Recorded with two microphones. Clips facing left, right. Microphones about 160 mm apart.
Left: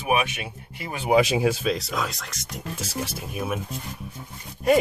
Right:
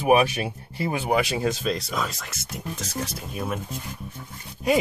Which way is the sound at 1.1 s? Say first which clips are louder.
Left 6 dB; 20° left (ahead or behind).